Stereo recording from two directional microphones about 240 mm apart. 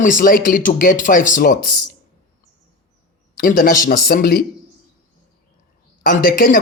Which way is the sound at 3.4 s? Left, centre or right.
Left.